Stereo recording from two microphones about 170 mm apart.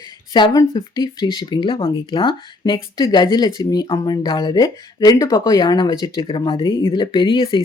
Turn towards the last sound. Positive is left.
turn(degrees=30)  # may be behind; listen again after turning